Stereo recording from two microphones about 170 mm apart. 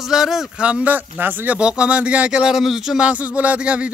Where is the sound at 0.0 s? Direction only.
Centre (ahead or behind).